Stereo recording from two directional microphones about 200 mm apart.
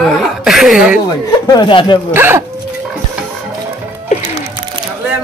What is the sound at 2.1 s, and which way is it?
Speech, 10° right (ahead or behind).